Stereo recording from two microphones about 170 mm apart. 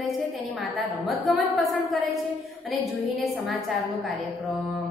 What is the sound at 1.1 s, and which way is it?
A woman's voice, centre (ahead or behind).